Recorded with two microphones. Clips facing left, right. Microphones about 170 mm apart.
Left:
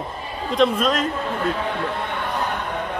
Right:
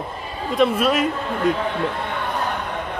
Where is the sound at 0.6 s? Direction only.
10° right (ahead or behind).